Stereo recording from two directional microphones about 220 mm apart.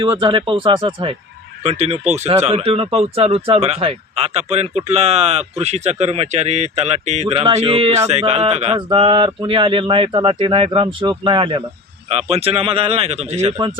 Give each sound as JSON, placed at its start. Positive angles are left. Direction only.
{"t": 0.0, "sound": "speech", "side_deg": -20}